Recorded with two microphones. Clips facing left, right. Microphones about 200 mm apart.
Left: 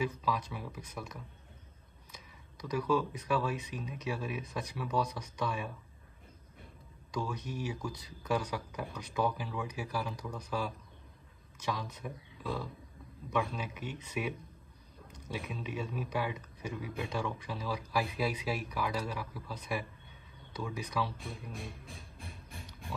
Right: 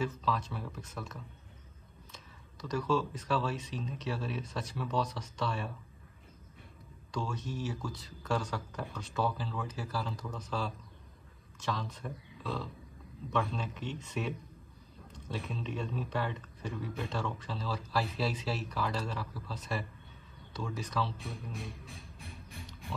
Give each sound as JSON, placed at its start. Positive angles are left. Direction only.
{"t": 0.0, "sound": "speech", "side_deg": 10}
{"t": 7.1, "sound": "speech", "side_deg": 15}